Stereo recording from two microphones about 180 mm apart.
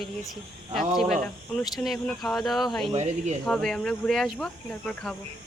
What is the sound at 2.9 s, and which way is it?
Speech, 40° right (ahead or behind).